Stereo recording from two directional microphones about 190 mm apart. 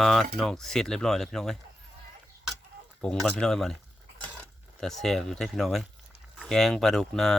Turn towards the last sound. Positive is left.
turn(degrees=5)  # may be behind; listen again after turning